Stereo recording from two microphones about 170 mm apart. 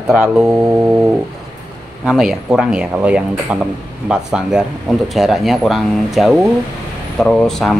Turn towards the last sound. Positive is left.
turn(degrees=0)  # may be behind; listen again after turning